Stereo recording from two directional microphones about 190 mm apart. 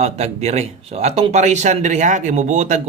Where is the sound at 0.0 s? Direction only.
35° right (ahead or behind).